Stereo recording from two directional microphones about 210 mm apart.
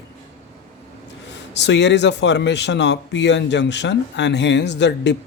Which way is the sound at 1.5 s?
55° left (ahead or behind).